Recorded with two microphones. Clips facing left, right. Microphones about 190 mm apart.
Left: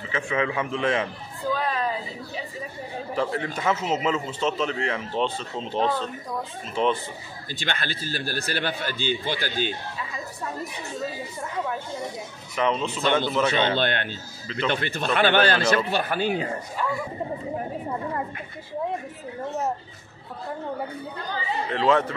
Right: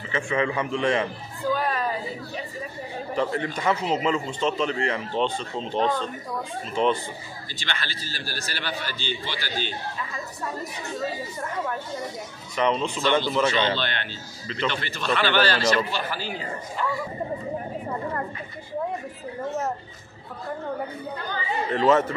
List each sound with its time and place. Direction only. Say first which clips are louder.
0.1 s speech: right 1 dB; centre (ahead or behind)
1.5 s a sound: right 1 dB; centre (ahead or behind)
3.2 s speech: right 1 dB; centre (ahead or behind)
7.5 s a man's voice: left 4 dB; 50° left (ahead or behind)
12.5 s speech: right 1 dB; 5° left (ahead or behind)
13.7 s a man's voice: left 5 dB; 50° left (ahead or behind)
21.6 s speech: right 2 dB; 5° right (ahead or behind)